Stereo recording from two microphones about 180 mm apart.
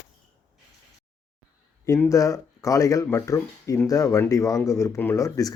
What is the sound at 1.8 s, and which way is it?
Speech, 15° left (ahead or behind).